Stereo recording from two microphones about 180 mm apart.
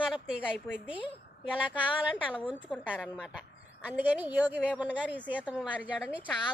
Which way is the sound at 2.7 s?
Centre (ahead or behind).